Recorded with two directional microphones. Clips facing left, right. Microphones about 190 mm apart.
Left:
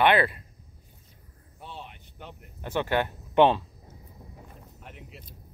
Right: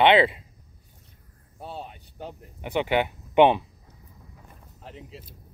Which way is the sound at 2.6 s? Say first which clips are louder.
Right 3 dB; 15° right (ahead or behind).